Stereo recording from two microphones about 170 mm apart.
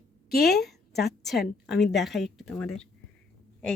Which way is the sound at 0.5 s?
Centre (ahead or behind).